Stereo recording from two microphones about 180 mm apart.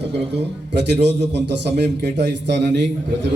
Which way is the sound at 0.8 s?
70° right (ahead or behind).